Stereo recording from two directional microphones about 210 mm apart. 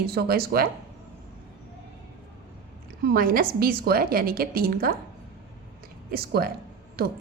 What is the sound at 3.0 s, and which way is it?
A woman's voice, 45° right (ahead or behind).